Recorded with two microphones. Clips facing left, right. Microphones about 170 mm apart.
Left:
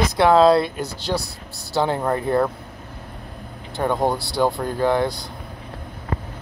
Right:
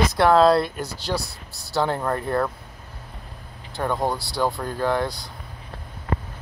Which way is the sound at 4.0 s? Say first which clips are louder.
Left 5 dB; 25° left (ahead or behind).